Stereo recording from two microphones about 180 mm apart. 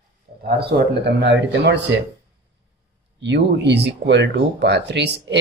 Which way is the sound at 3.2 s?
70° right (ahead or behind).